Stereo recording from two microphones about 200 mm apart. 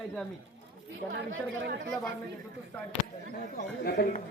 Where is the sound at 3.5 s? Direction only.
50° left (ahead or behind).